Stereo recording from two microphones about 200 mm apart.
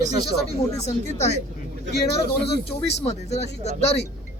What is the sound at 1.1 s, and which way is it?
Speech, 35° left (ahead or behind).